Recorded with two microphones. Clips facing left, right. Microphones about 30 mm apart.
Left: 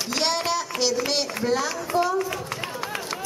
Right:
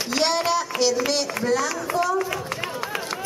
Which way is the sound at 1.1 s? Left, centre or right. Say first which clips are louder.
Right 2 dB; centre.